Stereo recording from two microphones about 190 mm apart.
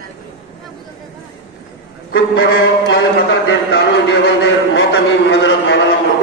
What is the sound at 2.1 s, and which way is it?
Music, 75° left (ahead or behind).